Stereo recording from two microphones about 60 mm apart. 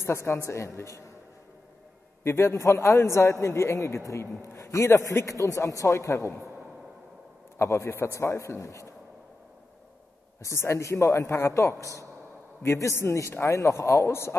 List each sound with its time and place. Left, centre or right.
0.0 s a man's voice: left
2.2 s a man's voice: left
7.5 s a man's voice: left
10.4 s a man's voice: left